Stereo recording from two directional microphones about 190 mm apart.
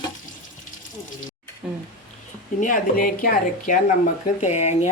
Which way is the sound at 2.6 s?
45° left (ahead or behind).